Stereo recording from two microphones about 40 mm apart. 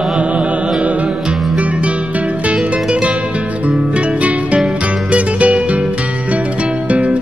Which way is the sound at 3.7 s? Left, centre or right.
Right.